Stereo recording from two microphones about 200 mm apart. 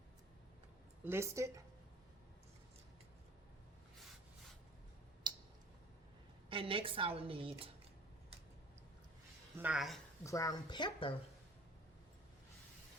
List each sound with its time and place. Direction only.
1.0 s speech: 15° right (ahead or behind)
5.2 s tick: 20° right (ahead or behind)
6.5 s a woman's voice: 25° right (ahead or behind)
9.6 s speech: 5° right (ahead or behind)
10.2 s a woman's voice: 15° left (ahead or behind)